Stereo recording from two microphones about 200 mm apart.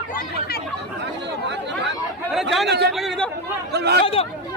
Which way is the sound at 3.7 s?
55° right (ahead or behind).